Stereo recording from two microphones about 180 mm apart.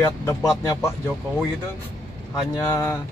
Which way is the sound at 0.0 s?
15° left (ahead or behind).